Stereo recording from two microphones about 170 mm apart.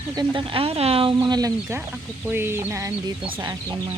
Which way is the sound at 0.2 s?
30° right (ahead or behind).